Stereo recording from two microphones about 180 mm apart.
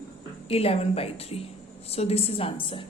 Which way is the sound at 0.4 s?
35° left (ahead or behind).